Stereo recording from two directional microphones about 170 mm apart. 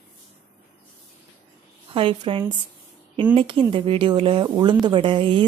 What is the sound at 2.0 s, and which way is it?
A woman's voice, 30° right (ahead or behind).